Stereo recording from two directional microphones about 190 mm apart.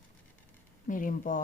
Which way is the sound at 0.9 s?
45° left (ahead or behind).